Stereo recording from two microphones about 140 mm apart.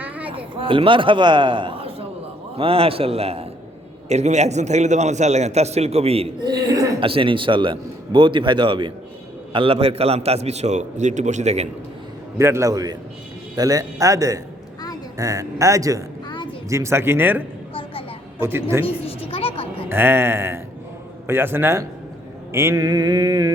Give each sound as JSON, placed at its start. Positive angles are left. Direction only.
{"t": 0.3, "sound": "a man's voice", "side_deg": -40}
{"t": 6.4, "sound": "speech", "side_deg": -25}
{"t": 7.0, "sound": "a man's voice", "side_deg": -40}
{"t": 12.4, "sound": "mantra", "side_deg": -20}
{"t": 16.3, "sound": "a sound", "side_deg": 35}
{"t": 16.6, "sound": "a man's voice", "side_deg": -20}
{"t": 18.9, "sound": "a sound", "side_deg": 45}
{"t": 19.9, "sound": "speech", "side_deg": -15}
{"t": 22.5, "sound": "mantra", "side_deg": -20}